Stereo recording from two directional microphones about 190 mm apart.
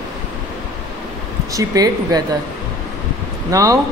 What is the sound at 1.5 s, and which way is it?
Speech, 20° right (ahead or behind).